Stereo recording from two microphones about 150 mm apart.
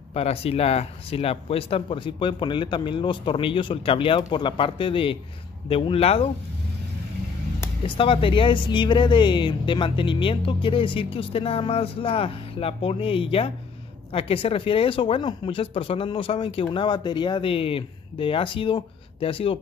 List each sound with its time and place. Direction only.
0.1 s speech: 40° left (ahead or behind)
7.8 s speech: 35° left (ahead or behind)